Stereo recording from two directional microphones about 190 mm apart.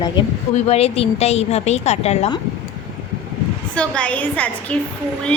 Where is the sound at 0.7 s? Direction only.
30° left (ahead or behind).